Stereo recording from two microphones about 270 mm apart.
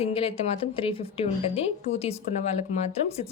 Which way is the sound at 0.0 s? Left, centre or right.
Left.